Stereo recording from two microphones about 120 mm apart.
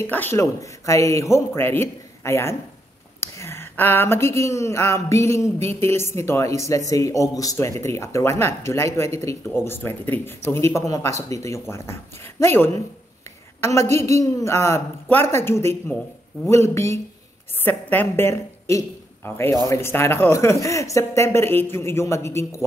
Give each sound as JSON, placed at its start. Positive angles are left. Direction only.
{"t": 0.0, "sound": "a man's voice", "side_deg": 20}